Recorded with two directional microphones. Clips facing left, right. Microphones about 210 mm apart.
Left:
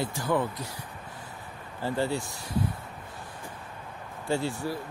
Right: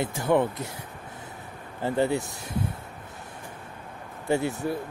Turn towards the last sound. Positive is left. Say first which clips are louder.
# right 3 dB
turn(degrees=-20)  # may be behind; listen again after turning